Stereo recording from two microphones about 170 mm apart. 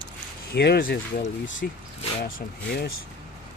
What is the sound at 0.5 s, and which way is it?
Speech, 70° left (ahead or behind).